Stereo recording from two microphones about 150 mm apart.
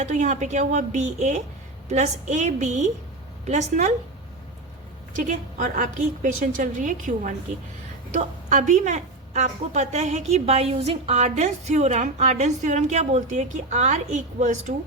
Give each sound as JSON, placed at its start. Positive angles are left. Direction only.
{"t": 0.0, "sound": "a woman's voice", "side_deg": -55}
{"t": 5.1, "sound": "a woman's voice", "side_deg": -55}
{"t": 8.1, "sound": "a woman's voice", "side_deg": -60}